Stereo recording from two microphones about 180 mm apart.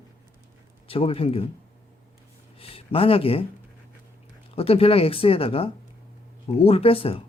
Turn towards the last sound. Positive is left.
turn(degrees=30)  # may be behind; listen again after turning